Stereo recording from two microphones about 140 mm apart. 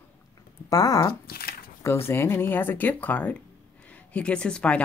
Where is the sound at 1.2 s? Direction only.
90° left.